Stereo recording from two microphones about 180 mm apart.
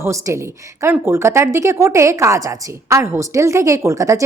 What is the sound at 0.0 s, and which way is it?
A woman's voice, 15° right (ahead or behind).